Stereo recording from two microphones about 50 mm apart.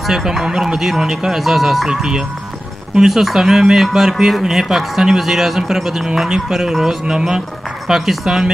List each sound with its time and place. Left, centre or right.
0.0 s speech: centre
1.9 s speech: centre
7.1 s speech: centre